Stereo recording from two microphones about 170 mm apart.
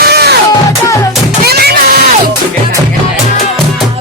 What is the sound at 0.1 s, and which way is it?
Music, 75° right (ahead or behind).